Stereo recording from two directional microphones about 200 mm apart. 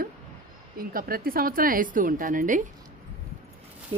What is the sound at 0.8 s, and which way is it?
Speech, 45° right (ahead or behind).